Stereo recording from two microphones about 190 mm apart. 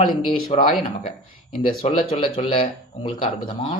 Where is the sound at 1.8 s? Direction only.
30° left (ahead or behind).